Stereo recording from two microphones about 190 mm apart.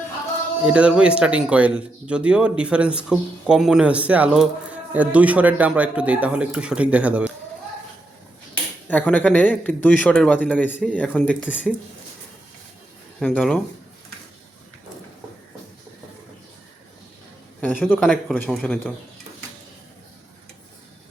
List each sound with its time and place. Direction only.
0.6 s speech: 5° right (ahead or behind)
8.9 s speech: 10° left (ahead or behind)
13.1 s speech: 5° left (ahead or behind)
17.6 s speech: 10° left (ahead or behind)